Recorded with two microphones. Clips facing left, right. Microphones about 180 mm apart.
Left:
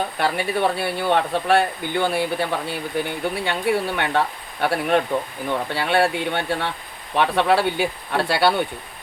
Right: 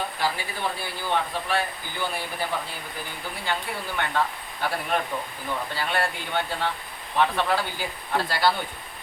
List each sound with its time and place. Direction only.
0.2 s speech: 65° left (ahead or behind)